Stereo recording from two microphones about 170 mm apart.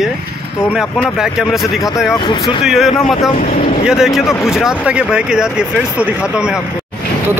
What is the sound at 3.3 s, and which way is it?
Speech, 50° left (ahead or behind).